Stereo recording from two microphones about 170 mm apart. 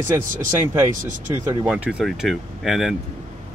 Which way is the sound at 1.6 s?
5° right (ahead or behind).